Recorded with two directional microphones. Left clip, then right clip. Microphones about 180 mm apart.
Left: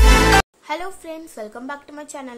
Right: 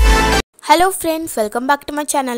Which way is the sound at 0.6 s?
60° right (ahead or behind).